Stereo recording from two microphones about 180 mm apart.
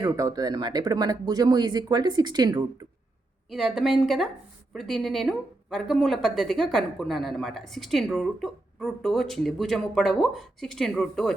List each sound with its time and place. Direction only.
0.0 s speech: 20° right (ahead or behind)
3.5 s speech: centre (ahead or behind)